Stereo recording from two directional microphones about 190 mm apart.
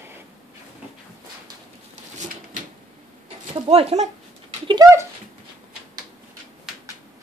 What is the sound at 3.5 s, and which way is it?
Speech, 30° right (ahead or behind).